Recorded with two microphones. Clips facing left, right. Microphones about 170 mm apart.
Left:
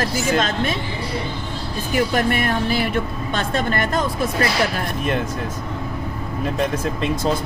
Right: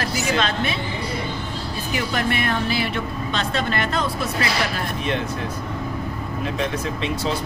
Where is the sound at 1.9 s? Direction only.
45° left (ahead or behind).